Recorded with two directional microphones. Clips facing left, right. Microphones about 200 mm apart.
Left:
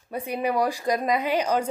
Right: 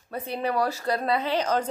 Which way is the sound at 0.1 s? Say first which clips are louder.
Left 2 dB; 10° left (ahead or behind).